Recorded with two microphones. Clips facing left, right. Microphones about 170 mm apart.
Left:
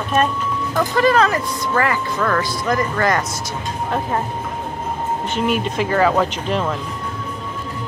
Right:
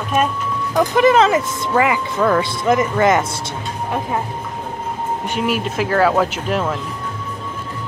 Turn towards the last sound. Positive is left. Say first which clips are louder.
# right 1 dB
turn(degrees=-5)  # may be behind; listen again after turning